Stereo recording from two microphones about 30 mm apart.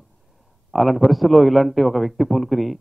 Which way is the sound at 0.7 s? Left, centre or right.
Centre.